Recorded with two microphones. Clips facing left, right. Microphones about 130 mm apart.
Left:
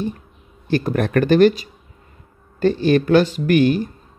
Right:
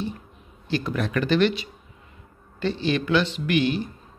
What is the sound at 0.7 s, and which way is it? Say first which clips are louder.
Speech: left 7 dB; 50° left (ahead or behind).